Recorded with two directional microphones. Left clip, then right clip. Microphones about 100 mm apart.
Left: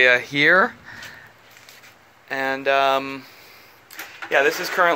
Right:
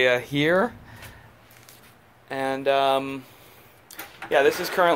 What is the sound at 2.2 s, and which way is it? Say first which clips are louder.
Speech: left 2 dB; 25° right (ahead or behind).